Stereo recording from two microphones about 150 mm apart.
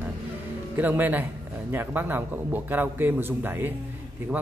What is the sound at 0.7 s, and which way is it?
A man's voice, 10° right (ahead or behind).